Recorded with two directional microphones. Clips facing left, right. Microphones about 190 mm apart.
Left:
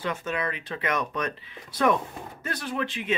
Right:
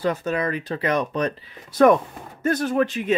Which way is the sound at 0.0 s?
40° right (ahead or behind).